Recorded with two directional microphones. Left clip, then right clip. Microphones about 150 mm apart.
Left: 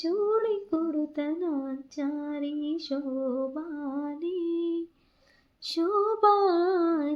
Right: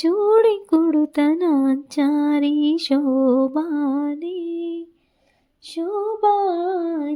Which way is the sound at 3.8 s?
90° right.